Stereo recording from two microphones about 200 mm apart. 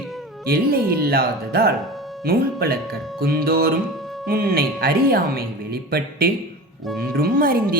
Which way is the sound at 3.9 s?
Centre (ahead or behind).